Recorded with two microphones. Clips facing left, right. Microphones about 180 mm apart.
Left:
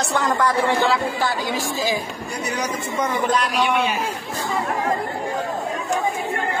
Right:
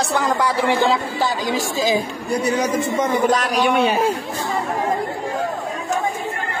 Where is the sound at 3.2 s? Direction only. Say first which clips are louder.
Right 1 dB; 45° right (ahead or behind).